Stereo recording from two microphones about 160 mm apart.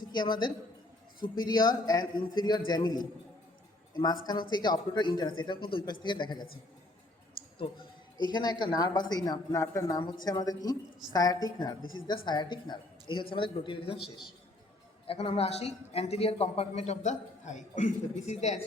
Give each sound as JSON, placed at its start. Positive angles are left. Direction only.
{"t": 0.1, "sound": "a woman's voice", "side_deg": 30}
{"t": 8.3, "sound": "speech", "side_deg": 25}
{"t": 15.0, "sound": "speech", "side_deg": 35}